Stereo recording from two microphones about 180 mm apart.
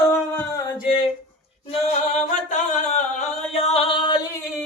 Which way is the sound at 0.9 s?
30° left (ahead or behind).